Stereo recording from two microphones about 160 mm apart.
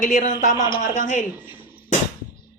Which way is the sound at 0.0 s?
55° left (ahead or behind).